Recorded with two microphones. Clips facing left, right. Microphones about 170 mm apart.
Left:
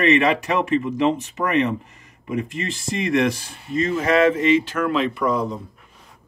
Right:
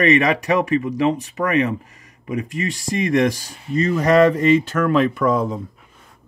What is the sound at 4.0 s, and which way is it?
Speech, 40° right (ahead or behind).